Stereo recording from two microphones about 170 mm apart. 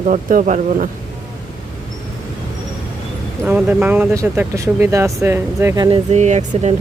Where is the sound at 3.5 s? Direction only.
10° right (ahead or behind).